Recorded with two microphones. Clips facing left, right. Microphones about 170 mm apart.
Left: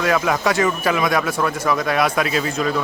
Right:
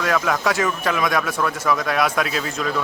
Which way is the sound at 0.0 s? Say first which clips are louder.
Left 2 dB; centre (ahead or behind).